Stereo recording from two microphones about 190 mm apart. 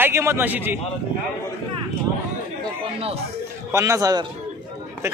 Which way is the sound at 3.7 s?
15° right (ahead or behind).